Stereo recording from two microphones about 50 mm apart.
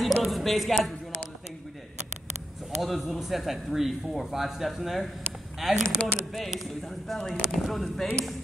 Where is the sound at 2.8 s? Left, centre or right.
Centre.